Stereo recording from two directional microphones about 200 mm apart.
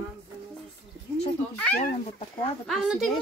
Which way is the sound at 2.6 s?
Centre (ahead or behind).